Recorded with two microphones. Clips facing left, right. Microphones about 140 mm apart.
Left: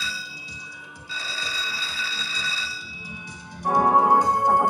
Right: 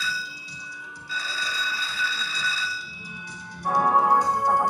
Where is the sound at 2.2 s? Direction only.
50° right (ahead or behind).